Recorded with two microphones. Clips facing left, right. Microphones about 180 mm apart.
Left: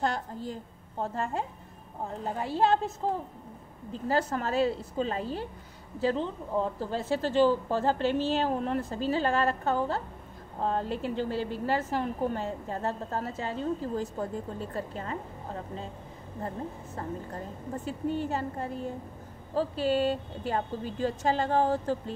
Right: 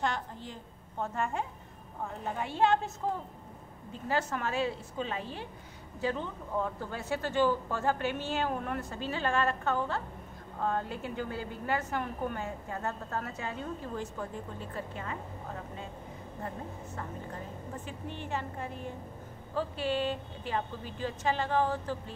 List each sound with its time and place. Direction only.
0.0 s a woman's voice: 35° left (ahead or behind)
3.9 s a woman's voice: 35° left (ahead or behind)